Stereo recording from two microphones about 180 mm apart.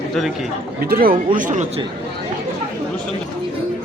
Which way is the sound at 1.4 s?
45° right (ahead or behind).